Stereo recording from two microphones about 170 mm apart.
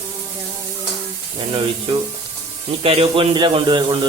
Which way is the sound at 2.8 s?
35° right (ahead or behind).